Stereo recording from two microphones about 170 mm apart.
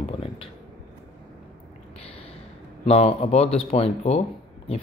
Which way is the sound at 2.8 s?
35° left (ahead or behind).